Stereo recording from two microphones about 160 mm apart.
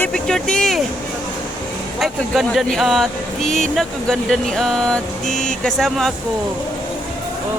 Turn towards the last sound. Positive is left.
turn(degrees=0)  # may be behind; listen again after turning